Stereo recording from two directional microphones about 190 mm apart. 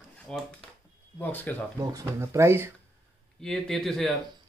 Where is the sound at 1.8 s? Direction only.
15° right (ahead or behind).